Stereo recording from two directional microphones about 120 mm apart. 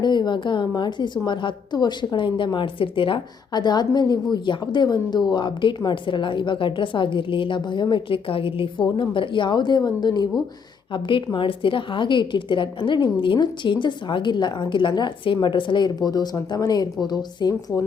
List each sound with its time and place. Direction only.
0.0 s a woman's voice: 40° left (ahead or behind)